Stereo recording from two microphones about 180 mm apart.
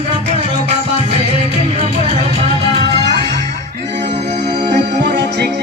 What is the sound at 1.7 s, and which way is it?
Music, 30° right (ahead or behind).